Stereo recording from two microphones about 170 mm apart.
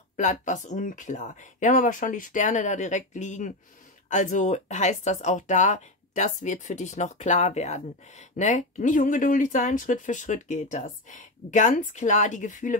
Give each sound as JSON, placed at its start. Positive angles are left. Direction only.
{"t": 0.1, "sound": "speech", "side_deg": 45}